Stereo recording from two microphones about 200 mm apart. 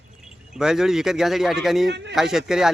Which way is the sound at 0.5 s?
Centre (ahead or behind).